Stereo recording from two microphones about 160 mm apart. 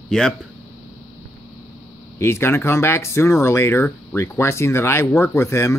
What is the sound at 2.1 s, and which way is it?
Speech, 15° left (ahead or behind).